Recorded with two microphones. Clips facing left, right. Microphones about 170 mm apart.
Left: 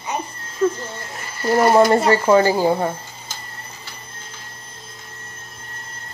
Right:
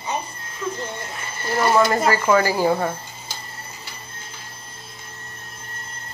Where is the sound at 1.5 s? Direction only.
30° left (ahead or behind).